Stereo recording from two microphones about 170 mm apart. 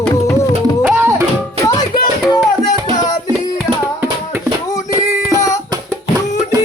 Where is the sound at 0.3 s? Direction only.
15° left (ahead or behind).